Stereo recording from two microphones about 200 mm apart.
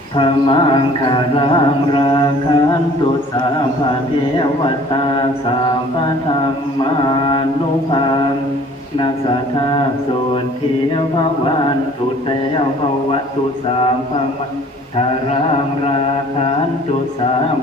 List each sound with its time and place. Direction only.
0.2 s music: 25° left (ahead or behind)
4.4 s music: 25° left (ahead or behind)
7.0 s music: 20° left (ahead or behind)